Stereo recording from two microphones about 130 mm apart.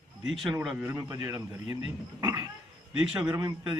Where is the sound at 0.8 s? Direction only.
20° right (ahead or behind).